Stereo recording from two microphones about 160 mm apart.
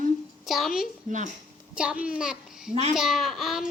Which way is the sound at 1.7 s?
5° right (ahead or behind).